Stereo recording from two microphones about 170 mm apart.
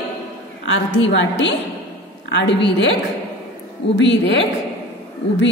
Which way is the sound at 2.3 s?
90° left.